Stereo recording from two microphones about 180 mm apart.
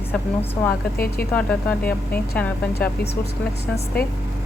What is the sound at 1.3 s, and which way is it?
Speech, 5° left (ahead or behind).